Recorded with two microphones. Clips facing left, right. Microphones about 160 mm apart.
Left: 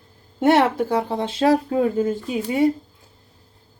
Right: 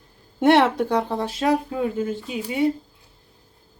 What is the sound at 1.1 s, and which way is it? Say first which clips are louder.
Speech: left 3 dB; 20° left (ahead or behind).